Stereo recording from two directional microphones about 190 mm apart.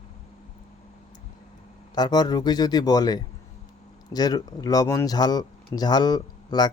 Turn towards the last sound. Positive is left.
turn(degrees=20)  # may be behind; listen again after turning